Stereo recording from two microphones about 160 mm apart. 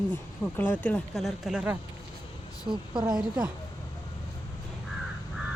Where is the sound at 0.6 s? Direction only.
10° left (ahead or behind); by 1.8 s 5° right (ahead or behind).